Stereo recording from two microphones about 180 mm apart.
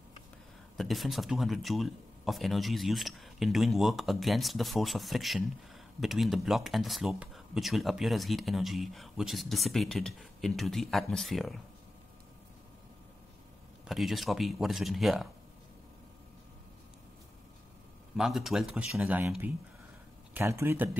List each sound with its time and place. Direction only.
0.7 s speech: centre (ahead or behind)
13.8 s speech: centre (ahead or behind)
18.1 s speech: centre (ahead or behind)